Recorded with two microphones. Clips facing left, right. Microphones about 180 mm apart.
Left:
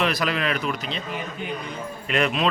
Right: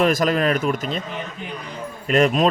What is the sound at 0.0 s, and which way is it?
Speech, 45° right (ahead or behind).